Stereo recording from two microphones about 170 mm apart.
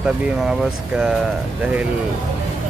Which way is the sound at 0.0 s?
5° right (ahead or behind).